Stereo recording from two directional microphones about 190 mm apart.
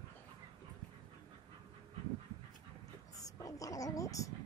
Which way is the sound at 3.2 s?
20° left (ahead or behind).